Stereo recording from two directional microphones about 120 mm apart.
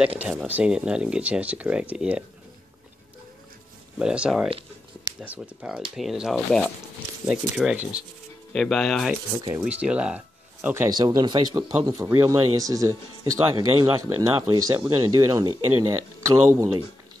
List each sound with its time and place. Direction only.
0.2 s speech: 10° right (ahead or behind)
4.0 s speech: 10° right (ahead or behind)
8.5 s speech: centre (ahead or behind)
9.5 s speech: 15° right (ahead or behind)
10.9 s speech: 35° right (ahead or behind)